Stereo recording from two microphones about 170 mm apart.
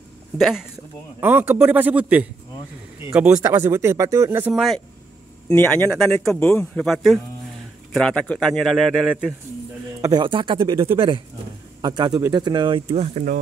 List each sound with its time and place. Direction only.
0.4 s a man's voice: centre (ahead or behind)
4.6 s a man's voice: centre (ahead or behind)
5.5 s a man's voice: 10° left (ahead or behind); by 9.3 s 5° right (ahead or behind)
10.0 s speech: 25° right (ahead or behind); by 13.4 s 45° right (ahead or behind)